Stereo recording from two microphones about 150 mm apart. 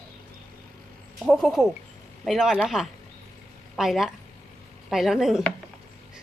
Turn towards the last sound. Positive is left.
turn(degrees=-5)  # may be behind; listen again after turning